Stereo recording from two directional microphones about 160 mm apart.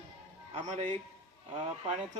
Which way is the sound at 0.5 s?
45° right (ahead or behind).